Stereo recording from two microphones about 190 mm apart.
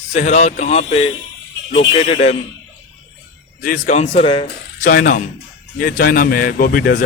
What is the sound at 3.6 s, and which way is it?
Speech, 45° left (ahead or behind).